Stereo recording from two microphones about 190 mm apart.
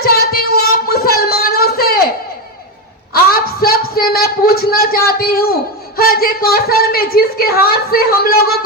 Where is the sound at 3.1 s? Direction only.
50° left (ahead or behind).